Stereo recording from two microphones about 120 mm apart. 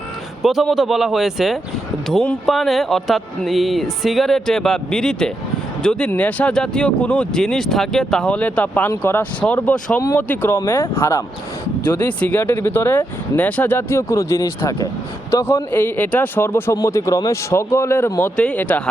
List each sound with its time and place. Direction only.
0.4 s speech: centre (ahead or behind)